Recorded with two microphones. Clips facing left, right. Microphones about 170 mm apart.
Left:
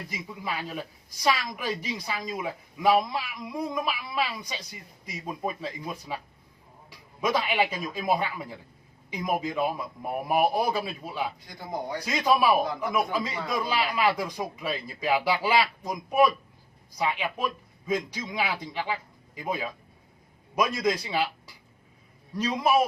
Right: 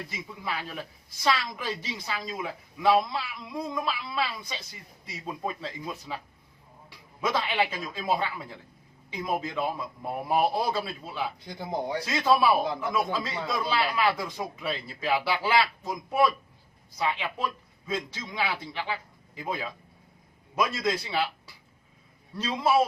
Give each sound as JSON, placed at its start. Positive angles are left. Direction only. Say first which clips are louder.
{"t": 0.1, "sound": "a woman's voice", "louder": "left 1 dB", "side_deg": 15}
{"t": 7.2, "sound": "a woman's voice", "louder": "left 2 dB", "side_deg": 15}
{"t": 11.4, "sound": "speech", "louder": "right 2 dB", "side_deg": -25}
{"t": 12.0, "sound": "a woman's voice", "louder": "left 1 dB", "side_deg": 15}
{"t": 22.4, "sound": "a woman's voice", "louder": "left 1 dB", "side_deg": 15}